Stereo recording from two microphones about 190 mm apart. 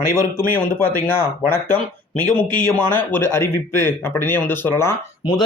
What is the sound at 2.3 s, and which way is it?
Speech, 10° left (ahead or behind).